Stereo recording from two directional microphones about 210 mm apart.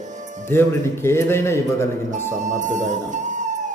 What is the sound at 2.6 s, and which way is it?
Speech, 35° right (ahead or behind).